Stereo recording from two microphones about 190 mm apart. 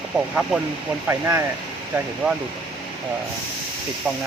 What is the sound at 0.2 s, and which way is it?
Speech, 5° right (ahead or behind).